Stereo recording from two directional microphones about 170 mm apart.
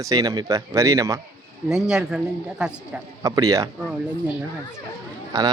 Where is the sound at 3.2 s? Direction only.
20° right (ahead or behind).